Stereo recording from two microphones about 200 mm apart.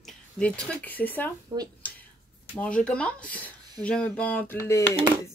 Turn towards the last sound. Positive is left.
turn(degrees=10)  # may be behind; listen again after turning